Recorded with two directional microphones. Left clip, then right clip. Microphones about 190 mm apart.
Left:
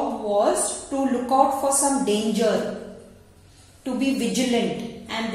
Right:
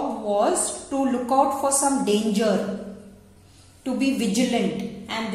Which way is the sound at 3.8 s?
20° right (ahead or behind).